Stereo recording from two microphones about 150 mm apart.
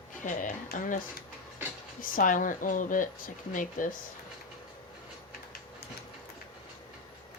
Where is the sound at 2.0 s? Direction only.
60° left (ahead or behind).